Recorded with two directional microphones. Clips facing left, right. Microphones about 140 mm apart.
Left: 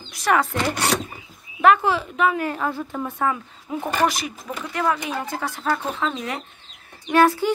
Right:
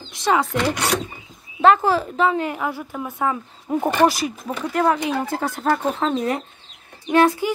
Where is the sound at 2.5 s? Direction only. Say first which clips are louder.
Even; 10° right (ahead or behind).